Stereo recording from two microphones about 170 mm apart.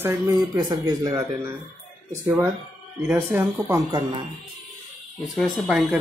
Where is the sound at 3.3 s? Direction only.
15° right (ahead or behind).